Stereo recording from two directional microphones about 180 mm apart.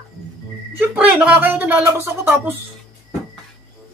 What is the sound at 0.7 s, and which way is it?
Speech, 10° right (ahead or behind).